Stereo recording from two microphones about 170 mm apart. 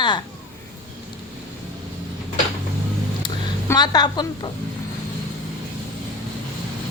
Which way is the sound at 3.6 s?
25° left (ahead or behind).